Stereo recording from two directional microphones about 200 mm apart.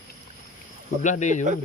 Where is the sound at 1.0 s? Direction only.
35° left (ahead or behind).